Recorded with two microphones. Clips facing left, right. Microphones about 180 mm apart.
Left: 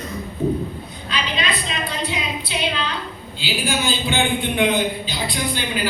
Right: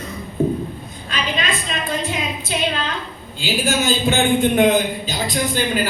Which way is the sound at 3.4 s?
45° right (ahead or behind).